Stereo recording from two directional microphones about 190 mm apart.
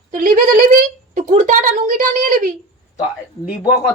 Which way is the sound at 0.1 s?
45° right (ahead or behind).